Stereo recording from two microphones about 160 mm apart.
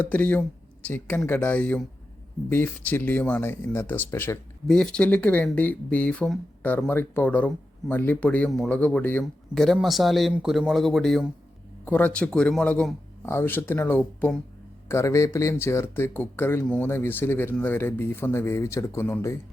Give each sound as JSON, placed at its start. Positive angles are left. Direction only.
{"t": 0.0, "sound": "speech", "side_deg": 10}
{"t": 14.8, "sound": "speech", "side_deg": 20}